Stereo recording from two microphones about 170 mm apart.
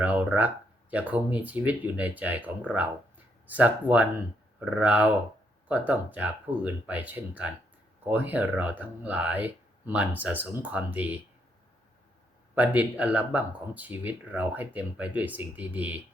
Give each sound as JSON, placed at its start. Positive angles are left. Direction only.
{"t": 0.0, "sound": "speech", "side_deg": -10}
{"t": 12.5, "sound": "speech", "side_deg": -10}